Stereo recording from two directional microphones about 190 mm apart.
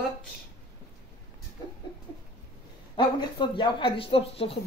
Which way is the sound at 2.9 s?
25° left (ahead or behind).